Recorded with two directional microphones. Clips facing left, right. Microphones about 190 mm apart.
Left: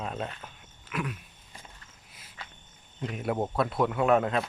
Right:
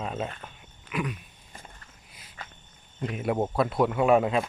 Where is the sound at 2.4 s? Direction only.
50° right (ahead or behind).